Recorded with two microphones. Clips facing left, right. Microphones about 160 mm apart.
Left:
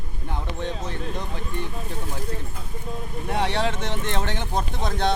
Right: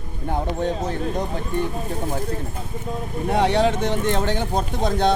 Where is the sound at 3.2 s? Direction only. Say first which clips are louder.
Right 6 dB; 45° right (ahead or behind).